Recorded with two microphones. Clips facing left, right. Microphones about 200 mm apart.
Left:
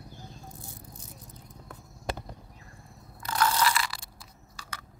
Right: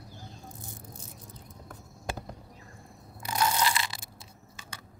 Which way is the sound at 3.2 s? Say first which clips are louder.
Left 1 dB; 15° right (ahead or behind).